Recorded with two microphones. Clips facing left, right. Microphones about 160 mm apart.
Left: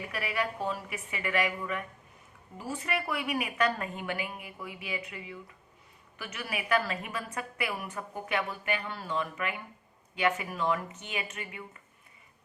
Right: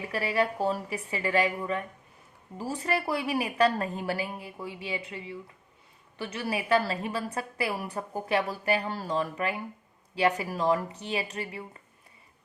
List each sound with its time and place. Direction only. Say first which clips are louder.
0.1 s a woman's voice: right 7 dB; 30° right (ahead or behind)